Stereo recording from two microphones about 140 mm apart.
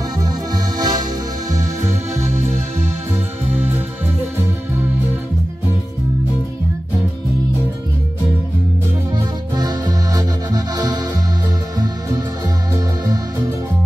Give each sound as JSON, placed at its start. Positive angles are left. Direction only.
{"t": 0.7, "sound": "music", "side_deg": -30}
{"t": 3.5, "sound": "music", "side_deg": -15}
{"t": 9.6, "sound": "music", "side_deg": -30}